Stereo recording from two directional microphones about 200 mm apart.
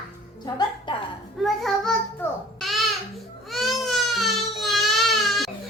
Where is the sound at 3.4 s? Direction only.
Centre (ahead or behind).